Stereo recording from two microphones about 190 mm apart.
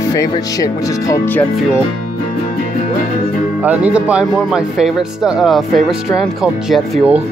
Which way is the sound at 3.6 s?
5° right (ahead or behind).